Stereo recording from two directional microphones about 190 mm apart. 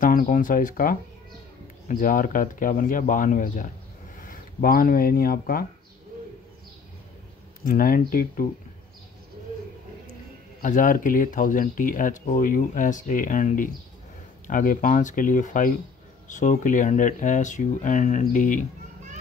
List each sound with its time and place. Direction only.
0.0 s speech: 45° left (ahead or behind)
7.6 s speech: 50° left (ahead or behind)
10.6 s speech: 45° left (ahead or behind)